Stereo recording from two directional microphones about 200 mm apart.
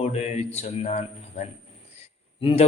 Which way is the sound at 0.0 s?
30° left (ahead or behind).